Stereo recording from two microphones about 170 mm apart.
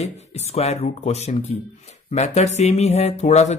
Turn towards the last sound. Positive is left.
turn(degrees=40)  # may be behind; listen again after turning